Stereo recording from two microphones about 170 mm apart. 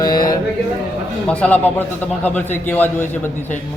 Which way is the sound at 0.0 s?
20° left (ahead or behind).